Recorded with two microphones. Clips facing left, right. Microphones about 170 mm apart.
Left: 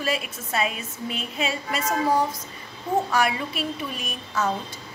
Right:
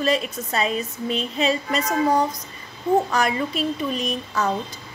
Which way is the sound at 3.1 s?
5° left (ahead or behind).